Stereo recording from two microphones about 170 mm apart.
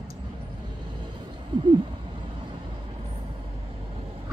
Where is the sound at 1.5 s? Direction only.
30° right (ahead or behind).